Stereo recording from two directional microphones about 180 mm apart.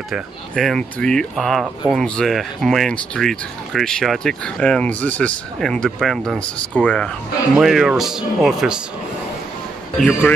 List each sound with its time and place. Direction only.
0.1 s speech: centre (ahead or behind)
9.9 s speech: 5° left (ahead or behind)